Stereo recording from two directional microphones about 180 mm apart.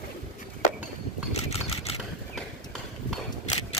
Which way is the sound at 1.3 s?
35° left (ahead or behind).